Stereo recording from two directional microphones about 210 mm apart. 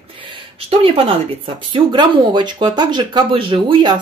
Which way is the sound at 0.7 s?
25° right (ahead or behind).